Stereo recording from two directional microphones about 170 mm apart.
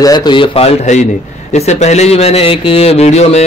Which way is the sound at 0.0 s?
25° left (ahead or behind).